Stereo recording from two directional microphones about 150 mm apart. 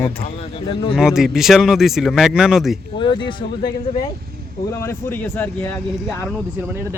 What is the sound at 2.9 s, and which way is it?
Speech, 35° left (ahead or behind).